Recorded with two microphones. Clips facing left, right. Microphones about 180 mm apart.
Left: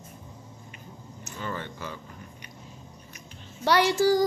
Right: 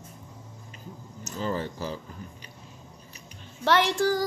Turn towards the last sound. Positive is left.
turn(degrees=0)  # may be behind; listen again after turning